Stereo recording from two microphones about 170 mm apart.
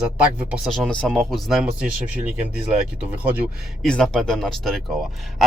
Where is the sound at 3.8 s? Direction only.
5° left (ahead or behind).